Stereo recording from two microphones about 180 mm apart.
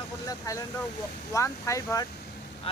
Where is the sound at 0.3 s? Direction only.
20° left (ahead or behind).